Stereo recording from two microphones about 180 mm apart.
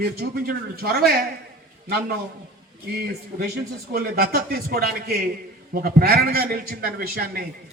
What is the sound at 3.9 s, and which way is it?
A man's voice, 55° right (ahead or behind).